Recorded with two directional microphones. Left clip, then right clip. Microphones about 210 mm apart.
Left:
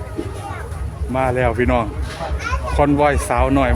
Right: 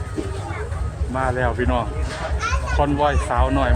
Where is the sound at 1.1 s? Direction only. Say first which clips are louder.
Left 4 dB; 35° left (ahead or behind).